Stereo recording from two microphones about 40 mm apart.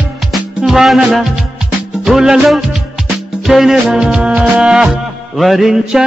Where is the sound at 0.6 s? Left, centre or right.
Centre.